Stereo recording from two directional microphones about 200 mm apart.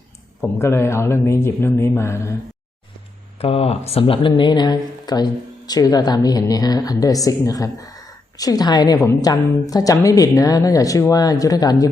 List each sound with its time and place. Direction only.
0.4 s speech: 10° left (ahead or behind)
3.4 s speech: 30° left (ahead or behind)